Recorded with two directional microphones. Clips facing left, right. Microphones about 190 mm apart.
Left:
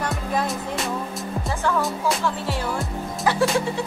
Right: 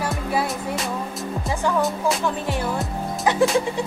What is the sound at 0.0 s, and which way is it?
Music, 5° right (ahead or behind).